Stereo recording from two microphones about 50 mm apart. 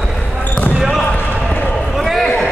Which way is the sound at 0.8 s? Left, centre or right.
Centre.